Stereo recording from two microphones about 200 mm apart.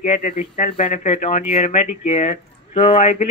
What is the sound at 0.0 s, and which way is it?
Speech, 40° left (ahead or behind).